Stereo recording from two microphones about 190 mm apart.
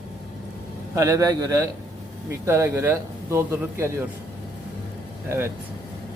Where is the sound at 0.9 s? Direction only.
15° right (ahead or behind).